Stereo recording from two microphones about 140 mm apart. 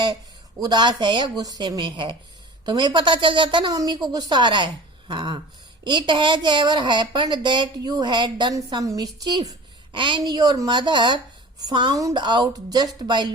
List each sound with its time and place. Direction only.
0.6 s speech: 30° right (ahead or behind)